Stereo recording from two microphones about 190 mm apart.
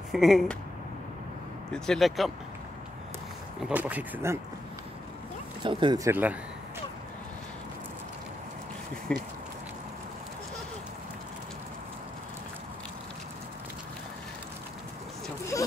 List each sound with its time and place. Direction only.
0.1 s speech: centre (ahead or behind)
1.7 s speech: centre (ahead or behind)
3.6 s speech: 10° right (ahead or behind)
5.6 s speech: 25° right (ahead or behind)
9.1 s speech: 5° left (ahead or behind)
15.5 s a sound: 15° left (ahead or behind)